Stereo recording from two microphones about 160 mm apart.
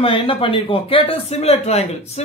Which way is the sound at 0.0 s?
35° left (ahead or behind).